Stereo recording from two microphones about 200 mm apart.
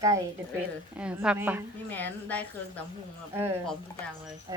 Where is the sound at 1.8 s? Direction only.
10° left (ahead or behind).